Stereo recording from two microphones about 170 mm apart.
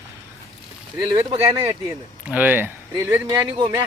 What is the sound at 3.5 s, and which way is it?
Speech, 25° right (ahead or behind).